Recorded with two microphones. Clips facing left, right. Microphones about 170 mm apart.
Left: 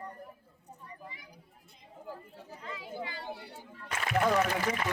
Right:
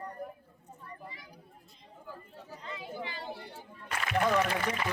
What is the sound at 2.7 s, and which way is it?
Chatter, 25° right (ahead or behind).